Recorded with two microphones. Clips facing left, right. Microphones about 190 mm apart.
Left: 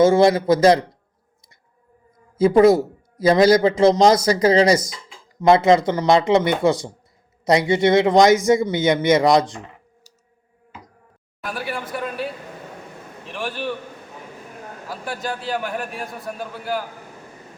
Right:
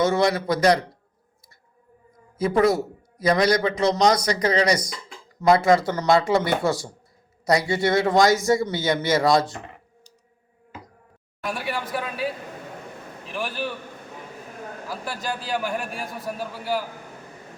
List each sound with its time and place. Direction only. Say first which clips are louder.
0.0 s a man's voice: left 7 dB; 25° left (ahead or behind)
2.4 s a man's voice: left 7 dB; 25° left (ahead or behind)
11.3 s a man's voice: even; centre (ahead or behind)
15.0 s a man's voice: left 4 dB; centre (ahead or behind)